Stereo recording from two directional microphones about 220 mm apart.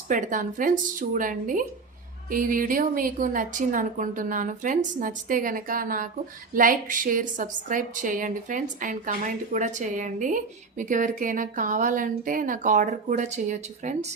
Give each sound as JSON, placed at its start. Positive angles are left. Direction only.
{"t": 0.1, "sound": "a woman's voice", "side_deg": -35}